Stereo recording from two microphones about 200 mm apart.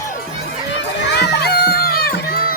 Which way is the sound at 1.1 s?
55° left (ahead or behind).